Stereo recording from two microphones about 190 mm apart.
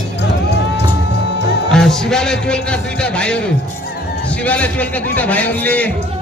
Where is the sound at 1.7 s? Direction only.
5° left (ahead or behind).